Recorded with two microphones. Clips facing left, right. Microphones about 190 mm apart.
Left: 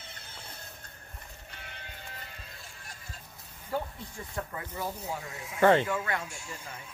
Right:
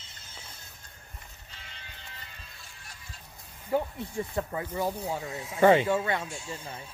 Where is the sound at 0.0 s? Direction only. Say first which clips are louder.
Left 3 dB; 60° left (ahead or behind).